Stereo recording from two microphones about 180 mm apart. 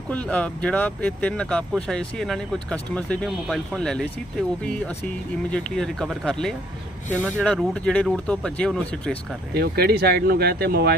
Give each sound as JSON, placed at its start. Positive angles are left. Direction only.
{"t": 0.1, "sound": "speech", "side_deg": 5}
{"t": 9.6, "sound": "speech", "side_deg": -60}